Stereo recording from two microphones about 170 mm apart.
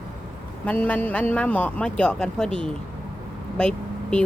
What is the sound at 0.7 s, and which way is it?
Speech, 10° left (ahead or behind).